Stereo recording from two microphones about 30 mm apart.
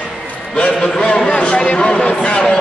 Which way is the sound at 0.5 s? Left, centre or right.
Left.